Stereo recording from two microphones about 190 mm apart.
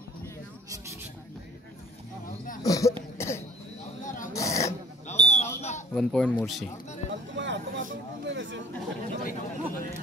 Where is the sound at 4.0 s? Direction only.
45° left (ahead or behind).